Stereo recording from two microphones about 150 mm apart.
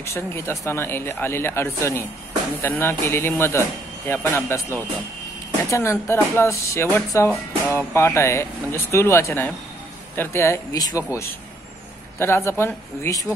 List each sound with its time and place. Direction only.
0.0 s a man's voice: 15° left (ahead or behind)
12.2 s a man's voice: 15° left (ahead or behind)